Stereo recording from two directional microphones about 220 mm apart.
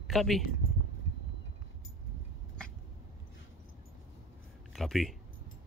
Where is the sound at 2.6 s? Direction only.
5° left (ahead or behind).